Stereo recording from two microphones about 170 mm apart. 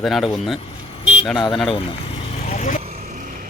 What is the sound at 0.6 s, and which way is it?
Vehicle, 35° left (ahead or behind).